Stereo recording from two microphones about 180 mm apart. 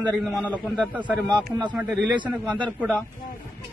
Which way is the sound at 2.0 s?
25° right (ahead or behind).